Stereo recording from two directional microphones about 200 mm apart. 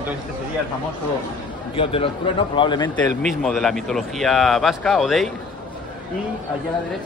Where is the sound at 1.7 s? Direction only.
30° left (ahead or behind).